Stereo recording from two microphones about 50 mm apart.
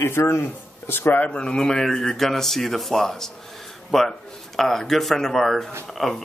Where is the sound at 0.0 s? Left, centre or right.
Left.